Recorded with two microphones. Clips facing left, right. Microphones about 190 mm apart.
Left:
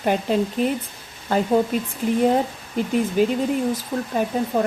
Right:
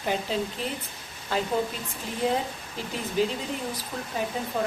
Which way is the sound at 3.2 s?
55° left (ahead or behind).